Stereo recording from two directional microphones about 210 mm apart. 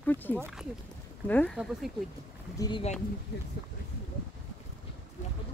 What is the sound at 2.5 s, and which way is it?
Speech, 20° left (ahead or behind).